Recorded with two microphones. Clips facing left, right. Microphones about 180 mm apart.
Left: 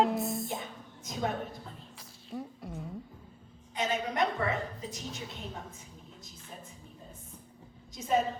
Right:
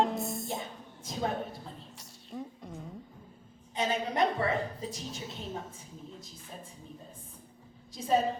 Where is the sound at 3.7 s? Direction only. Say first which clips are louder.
Right 1 dB; 30° right (ahead or behind).